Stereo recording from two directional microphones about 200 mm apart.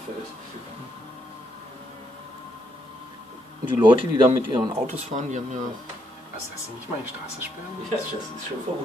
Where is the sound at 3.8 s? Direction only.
25° right (ahead or behind).